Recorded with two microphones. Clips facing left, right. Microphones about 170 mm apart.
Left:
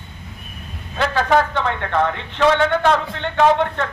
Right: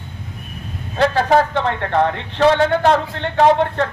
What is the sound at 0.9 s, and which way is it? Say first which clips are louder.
A man's voice: right 3 dB; 35° right (ahead or behind).